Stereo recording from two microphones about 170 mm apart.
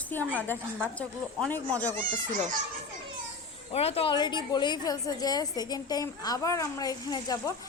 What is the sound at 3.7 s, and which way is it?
A woman's voice, 35° left (ahead or behind).